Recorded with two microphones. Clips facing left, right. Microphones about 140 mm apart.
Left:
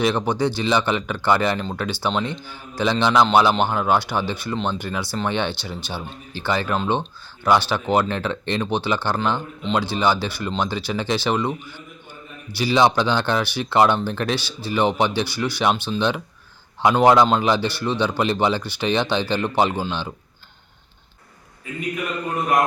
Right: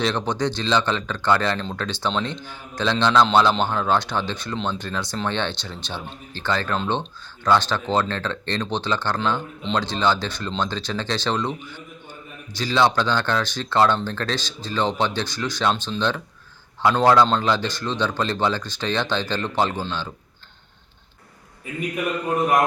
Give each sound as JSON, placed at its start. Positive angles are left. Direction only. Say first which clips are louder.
{"t": 0.0, "sound": "speech", "louder": "left 3 dB", "side_deg": 10}